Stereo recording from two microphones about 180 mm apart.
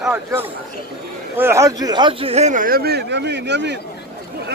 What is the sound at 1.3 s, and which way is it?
Speech, 15° right (ahead or behind).